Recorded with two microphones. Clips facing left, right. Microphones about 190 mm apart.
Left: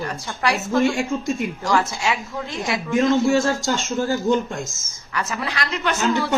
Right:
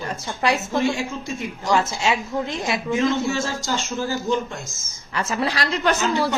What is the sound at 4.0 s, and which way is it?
Speech, 55° left (ahead or behind).